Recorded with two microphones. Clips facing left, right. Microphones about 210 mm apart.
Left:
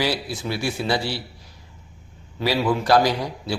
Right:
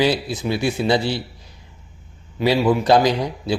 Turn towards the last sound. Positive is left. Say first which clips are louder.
# right 4 dB
turn(degrees=-20)  # may be behind; listen again after turning